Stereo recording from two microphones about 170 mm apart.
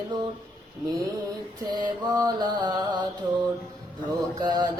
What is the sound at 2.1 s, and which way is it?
Mantra, 25° right (ahead or behind).